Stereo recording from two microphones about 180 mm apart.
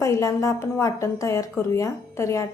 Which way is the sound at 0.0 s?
15° left (ahead or behind).